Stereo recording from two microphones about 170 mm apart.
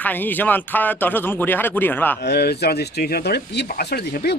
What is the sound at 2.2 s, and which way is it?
Speech, 75° left (ahead or behind).